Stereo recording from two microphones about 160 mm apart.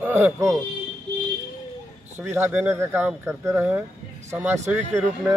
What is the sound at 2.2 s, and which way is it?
Speech, 15° right (ahead or behind).